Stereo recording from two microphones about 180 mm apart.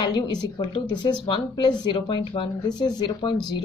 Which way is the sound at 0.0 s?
25° left (ahead or behind).